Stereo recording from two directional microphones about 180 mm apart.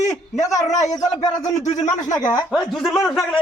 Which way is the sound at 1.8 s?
20° left (ahead or behind).